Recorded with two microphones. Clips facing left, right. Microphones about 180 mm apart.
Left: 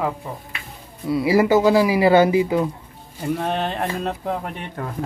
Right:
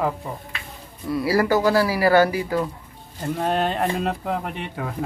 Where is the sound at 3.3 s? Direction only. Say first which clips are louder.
Right 2 dB; 5° right (ahead or behind).